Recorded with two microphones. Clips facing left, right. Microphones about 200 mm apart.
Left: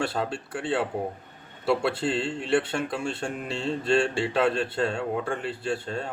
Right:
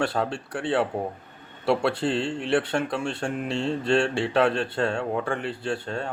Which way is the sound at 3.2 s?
65° right (ahead or behind).